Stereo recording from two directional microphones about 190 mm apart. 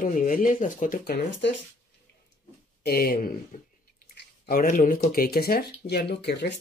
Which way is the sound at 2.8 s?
55° left (ahead or behind).